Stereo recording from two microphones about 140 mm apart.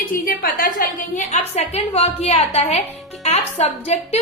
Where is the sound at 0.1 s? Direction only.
90° left.